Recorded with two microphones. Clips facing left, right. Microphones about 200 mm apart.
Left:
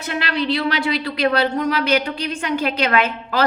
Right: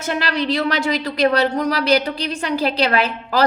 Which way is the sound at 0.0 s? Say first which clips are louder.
Right 1 dB; 40° right (ahead or behind).